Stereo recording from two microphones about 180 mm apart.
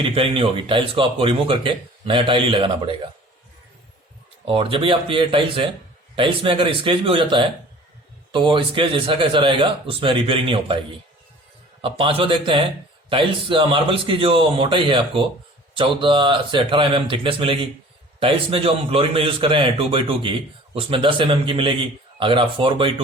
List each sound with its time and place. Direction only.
0.0 s speech: 30° right (ahead or behind)
4.4 s speech: 30° right (ahead or behind)
11.8 s speech: 30° right (ahead or behind)